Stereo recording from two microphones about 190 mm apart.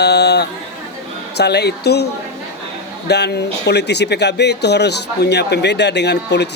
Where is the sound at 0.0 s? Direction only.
60° left (ahead or behind).